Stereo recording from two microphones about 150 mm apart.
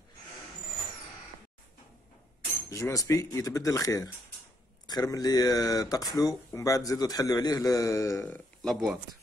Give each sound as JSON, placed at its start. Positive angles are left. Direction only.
{"t": 2.7, "sound": "speech", "side_deg": 20}
{"t": 8.6, "sound": "speech", "side_deg": 0}